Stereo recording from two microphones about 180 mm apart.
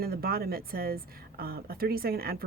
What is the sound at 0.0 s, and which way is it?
A woman's voice, 60° right (ahead or behind).